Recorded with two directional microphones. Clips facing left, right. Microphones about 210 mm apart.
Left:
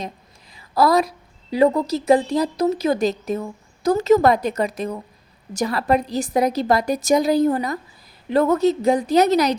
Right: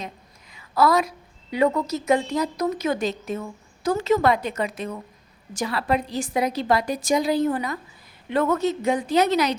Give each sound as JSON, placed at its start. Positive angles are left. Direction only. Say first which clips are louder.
{"t": 0.5, "sound": "a woman's voice", "louder": "left 3 dB", "side_deg": 35}